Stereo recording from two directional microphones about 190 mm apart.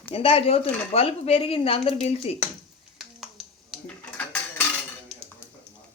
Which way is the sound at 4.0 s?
10° left (ahead or behind).